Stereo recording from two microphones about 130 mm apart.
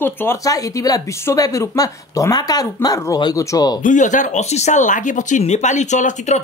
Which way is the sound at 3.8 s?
75° left (ahead or behind).